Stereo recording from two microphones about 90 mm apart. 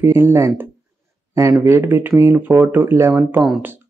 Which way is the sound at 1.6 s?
25° right (ahead or behind).